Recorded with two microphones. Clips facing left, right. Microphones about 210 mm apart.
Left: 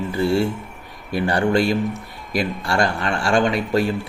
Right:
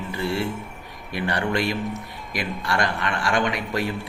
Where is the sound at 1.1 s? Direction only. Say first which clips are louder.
Left 6 dB; 30° left (ahead or behind).